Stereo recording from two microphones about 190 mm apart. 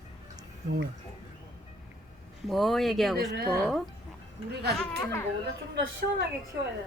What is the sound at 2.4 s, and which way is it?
Speech, centre (ahead or behind).